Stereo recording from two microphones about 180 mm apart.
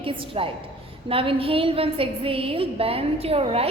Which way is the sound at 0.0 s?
30° right (ahead or behind).